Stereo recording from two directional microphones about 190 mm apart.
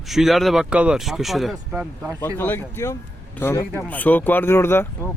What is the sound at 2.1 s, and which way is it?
Speech, 10° left (ahead or behind).